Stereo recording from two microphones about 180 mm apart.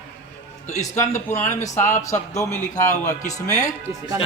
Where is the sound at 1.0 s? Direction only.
15° left (ahead or behind).